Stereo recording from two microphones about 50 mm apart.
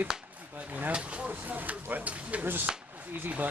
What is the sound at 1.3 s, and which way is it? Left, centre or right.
Speech, right.